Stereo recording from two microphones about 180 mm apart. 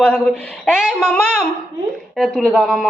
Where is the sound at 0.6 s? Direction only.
Centre (ahead or behind).